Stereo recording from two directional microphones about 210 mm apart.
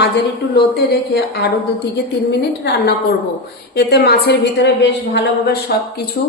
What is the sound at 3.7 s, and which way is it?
A woman's voice, 50° left (ahead or behind).